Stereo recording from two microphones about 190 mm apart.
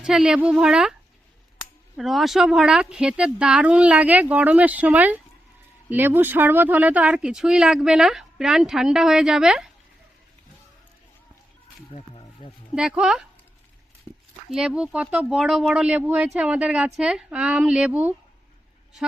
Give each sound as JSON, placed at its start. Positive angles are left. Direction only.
{"t": 0.0, "sound": "speech", "side_deg": -5}
{"t": 11.9, "sound": "a sound", "side_deg": 30}
{"t": 12.7, "sound": "speech", "side_deg": -5}
{"t": 14.5, "sound": "speech", "side_deg": -5}